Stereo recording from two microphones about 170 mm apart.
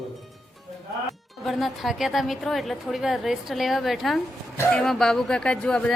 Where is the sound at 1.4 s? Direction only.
Centre (ahead or behind).